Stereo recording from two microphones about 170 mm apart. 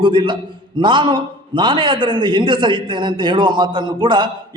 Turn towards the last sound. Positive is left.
turn(degrees=-25)  # may be behind; listen again after turning